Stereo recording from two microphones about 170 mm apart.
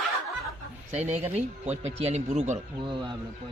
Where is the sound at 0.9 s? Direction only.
40° right (ahead or behind).